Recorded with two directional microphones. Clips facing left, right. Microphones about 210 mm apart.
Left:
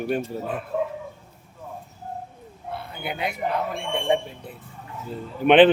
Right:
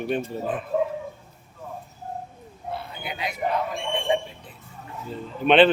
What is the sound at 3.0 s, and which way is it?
A man's voice, 60° left (ahead or behind).